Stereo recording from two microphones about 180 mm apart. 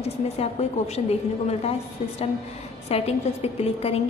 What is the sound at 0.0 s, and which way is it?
A woman's voice, 35° left (ahead or behind).